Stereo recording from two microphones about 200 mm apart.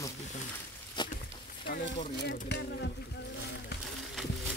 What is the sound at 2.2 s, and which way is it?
Speech, 55° left (ahead or behind).